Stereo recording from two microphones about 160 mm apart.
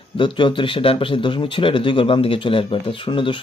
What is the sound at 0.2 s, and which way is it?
Speech, 30° left (ahead or behind).